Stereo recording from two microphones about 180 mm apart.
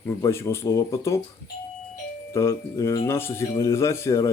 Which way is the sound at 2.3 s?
15° left (ahead or behind).